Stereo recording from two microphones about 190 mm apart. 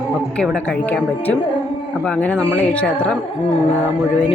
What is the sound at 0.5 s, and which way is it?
Speech, 5° left (ahead or behind).